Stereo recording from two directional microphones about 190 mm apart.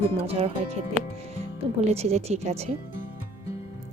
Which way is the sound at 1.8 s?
35° right (ahead or behind).